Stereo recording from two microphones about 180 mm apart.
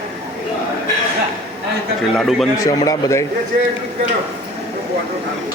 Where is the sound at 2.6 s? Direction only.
20° left (ahead or behind).